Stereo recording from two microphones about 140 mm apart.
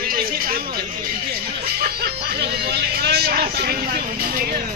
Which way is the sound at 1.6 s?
90° right.